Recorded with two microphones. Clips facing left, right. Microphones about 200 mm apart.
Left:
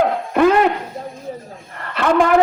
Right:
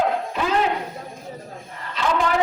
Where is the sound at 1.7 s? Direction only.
60° left (ahead or behind).